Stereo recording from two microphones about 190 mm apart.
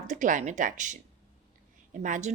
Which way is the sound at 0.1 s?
40° right (ahead or behind).